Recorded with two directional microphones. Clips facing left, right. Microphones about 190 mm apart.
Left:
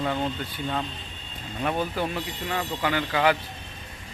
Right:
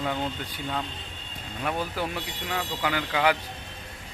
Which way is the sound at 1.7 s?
20° left (ahead or behind).